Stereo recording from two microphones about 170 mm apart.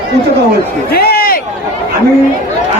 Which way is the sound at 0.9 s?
65° left (ahead or behind).